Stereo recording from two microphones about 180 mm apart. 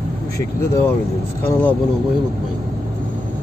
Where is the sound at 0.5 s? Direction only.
15° left (ahead or behind).